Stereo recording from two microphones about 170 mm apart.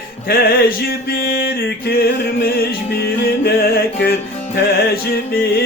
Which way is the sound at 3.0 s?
70° left (ahead or behind).